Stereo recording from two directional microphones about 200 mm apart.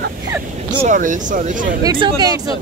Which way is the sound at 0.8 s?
40° right (ahead or behind).